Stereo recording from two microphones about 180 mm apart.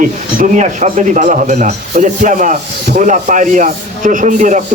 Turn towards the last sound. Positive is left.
turn(degrees=-45)  # may be behind; listen again after turning